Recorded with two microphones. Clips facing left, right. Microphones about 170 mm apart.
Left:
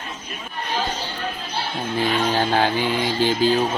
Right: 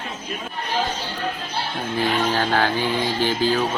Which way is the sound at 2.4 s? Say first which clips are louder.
Left 1 dB; 20° left (ahead or behind).